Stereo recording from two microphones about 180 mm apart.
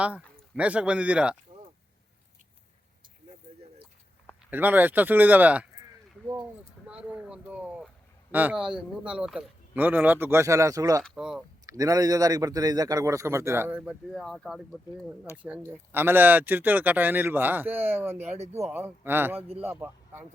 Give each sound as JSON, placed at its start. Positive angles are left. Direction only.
{"t": 0.5, "sound": "a man's voice", "side_deg": -5}
{"t": 4.5, "sound": "a man's voice", "side_deg": -10}
{"t": 6.8, "sound": "a sound", "side_deg": -5}
{"t": 8.3, "sound": "a man's voice", "side_deg": -10}
{"t": 11.0, "sound": "speech", "side_deg": 0}
{"t": 11.6, "sound": "a man's voice", "side_deg": -20}